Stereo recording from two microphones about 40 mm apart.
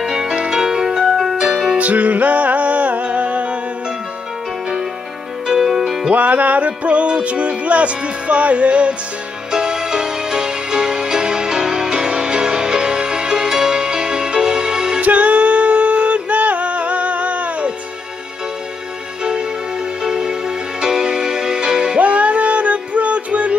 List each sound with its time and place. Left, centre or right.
0.0 s music: centre
1.4 s music: centre
1.8 s music: right
5.5 s music: centre
6.0 s music: right
9.5 s music: centre
15.0 s music: right
20.0 s music: centre
21.9 s music: right